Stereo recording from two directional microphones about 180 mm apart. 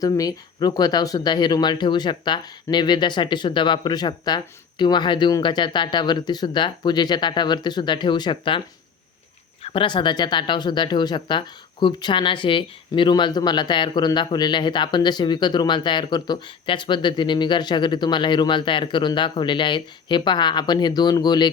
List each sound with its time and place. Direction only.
0.0 s speech: 20° left (ahead or behind)
9.6 s speech: 30° left (ahead or behind)